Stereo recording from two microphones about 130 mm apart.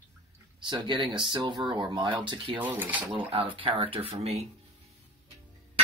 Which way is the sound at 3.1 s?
45° right (ahead or behind).